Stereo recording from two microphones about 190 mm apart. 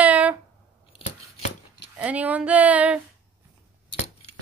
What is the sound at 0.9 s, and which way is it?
Scissors, 30° left (ahead or behind).